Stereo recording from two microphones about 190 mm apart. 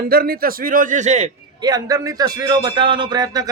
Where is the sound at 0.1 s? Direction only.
50° right (ahead or behind); by 1.3 s 35° right (ahead or behind).